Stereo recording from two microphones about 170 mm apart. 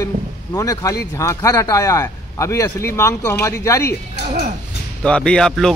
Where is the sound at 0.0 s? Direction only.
20° left (ahead or behind).